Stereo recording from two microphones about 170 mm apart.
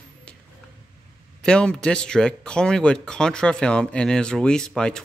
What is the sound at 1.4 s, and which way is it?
Speech, 5° left (ahead or behind).